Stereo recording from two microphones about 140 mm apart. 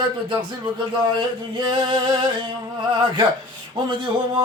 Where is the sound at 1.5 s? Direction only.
35° right (ahead or behind).